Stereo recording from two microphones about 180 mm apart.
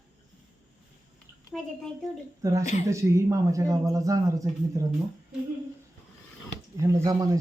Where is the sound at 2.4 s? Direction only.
15° right (ahead or behind).